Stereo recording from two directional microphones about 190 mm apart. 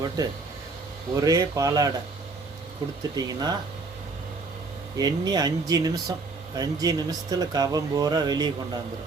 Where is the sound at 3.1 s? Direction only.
20° right (ahead or behind).